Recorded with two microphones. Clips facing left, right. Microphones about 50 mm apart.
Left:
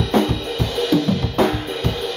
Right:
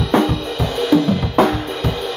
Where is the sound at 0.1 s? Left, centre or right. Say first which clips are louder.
Right 3 dB; centre.